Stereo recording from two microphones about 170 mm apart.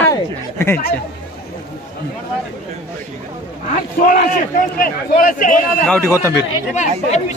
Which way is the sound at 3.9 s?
50° left (ahead or behind).